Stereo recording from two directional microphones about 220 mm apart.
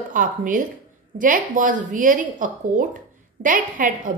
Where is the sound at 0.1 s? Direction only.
35° right (ahead or behind).